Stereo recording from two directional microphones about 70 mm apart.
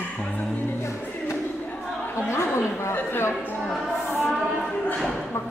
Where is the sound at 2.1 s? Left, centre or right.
Left.